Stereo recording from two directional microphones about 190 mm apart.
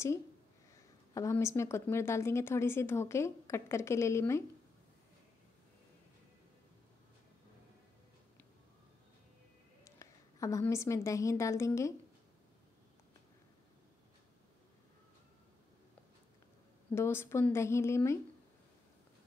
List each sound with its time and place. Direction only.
1.1 s speech: 15° left (ahead or behind)
9.8 s a woman's voice: 15° left (ahead or behind)
16.9 s speech: 15° left (ahead or behind)